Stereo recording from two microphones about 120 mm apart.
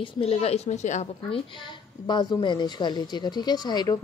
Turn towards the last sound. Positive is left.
turn(degrees=35)  # may be behind; listen again after turning